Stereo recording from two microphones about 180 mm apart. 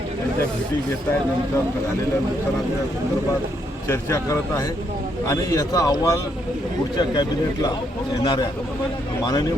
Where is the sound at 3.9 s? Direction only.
15° left (ahead or behind).